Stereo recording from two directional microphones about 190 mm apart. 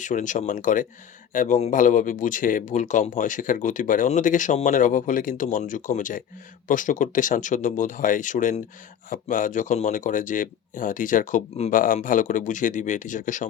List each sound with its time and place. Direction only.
0.0 s speech: 40° left (ahead or behind)